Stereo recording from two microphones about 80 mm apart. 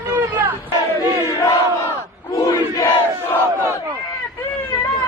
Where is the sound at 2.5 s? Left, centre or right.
Left.